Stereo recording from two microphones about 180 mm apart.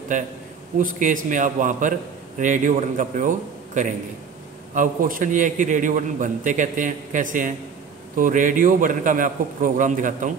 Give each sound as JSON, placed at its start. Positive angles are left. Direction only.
{"t": 0.1, "sound": "a man's voice", "side_deg": -45}